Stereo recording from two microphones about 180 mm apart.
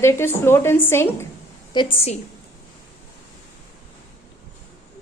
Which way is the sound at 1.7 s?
30° left (ahead or behind).